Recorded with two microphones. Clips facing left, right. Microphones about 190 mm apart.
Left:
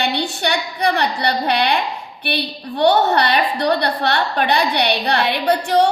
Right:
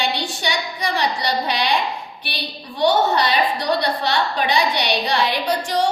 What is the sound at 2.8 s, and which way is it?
A woman's voice, 60° left (ahead or behind).